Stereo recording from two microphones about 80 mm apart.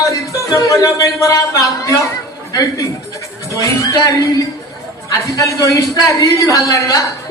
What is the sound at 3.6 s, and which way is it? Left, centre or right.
Speech, left.